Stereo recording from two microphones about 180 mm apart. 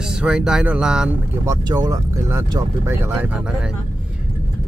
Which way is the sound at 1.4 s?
20° right (ahead or behind).